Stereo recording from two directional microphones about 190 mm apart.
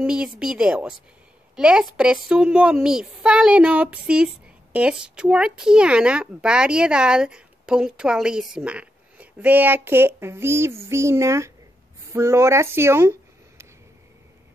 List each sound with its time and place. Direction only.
0.0 s speech: 5° right (ahead or behind)